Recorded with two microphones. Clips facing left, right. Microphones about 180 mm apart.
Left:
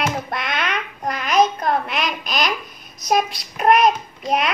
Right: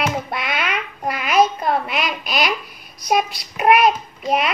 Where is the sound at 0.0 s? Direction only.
5° right (ahead or behind).